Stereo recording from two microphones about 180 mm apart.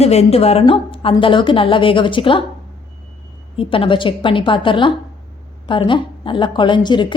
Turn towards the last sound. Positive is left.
turn(degrees=25)  # may be behind; listen again after turning